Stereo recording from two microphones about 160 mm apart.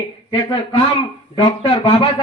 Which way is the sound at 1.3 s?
30° left (ahead or behind).